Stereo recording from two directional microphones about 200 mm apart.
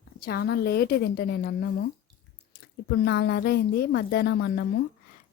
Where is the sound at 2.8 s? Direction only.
55° left (ahead or behind).